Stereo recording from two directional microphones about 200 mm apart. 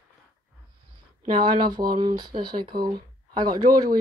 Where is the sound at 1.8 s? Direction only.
25° right (ahead or behind).